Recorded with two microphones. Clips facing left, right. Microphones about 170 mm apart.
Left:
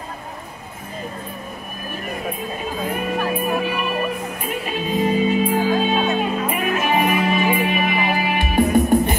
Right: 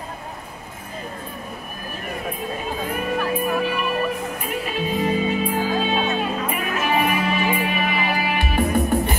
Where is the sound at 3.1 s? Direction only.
15° left (ahead or behind).